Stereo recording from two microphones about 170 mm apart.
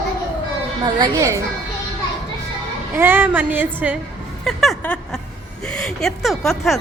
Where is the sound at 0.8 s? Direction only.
25° right (ahead or behind).